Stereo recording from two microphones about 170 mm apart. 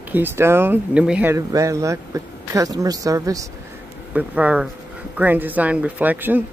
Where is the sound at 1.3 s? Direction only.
20° right (ahead or behind).